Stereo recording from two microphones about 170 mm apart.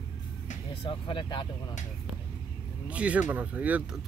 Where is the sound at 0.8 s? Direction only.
30° left (ahead or behind).